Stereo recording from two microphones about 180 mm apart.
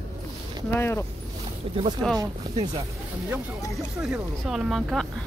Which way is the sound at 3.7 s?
5° right (ahead or behind).